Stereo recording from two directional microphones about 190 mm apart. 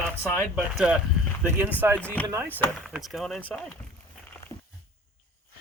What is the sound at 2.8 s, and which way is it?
Speech, centre (ahead or behind).